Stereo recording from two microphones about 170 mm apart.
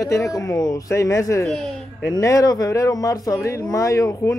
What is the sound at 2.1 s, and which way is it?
Speech, 20° left (ahead or behind).